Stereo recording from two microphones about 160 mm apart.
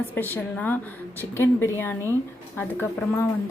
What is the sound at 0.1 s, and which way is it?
A woman's voice, 10° left (ahead or behind).